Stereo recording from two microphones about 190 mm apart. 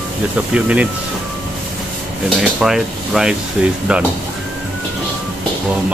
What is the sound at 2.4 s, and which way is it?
Speech, centre (ahead or behind).